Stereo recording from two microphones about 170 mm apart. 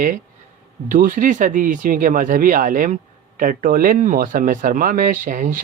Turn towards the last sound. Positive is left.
turn(degrees=-50)  # may be behind; listen again after turning